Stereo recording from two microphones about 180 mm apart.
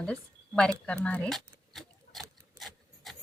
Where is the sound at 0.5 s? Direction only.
5° left (ahead or behind).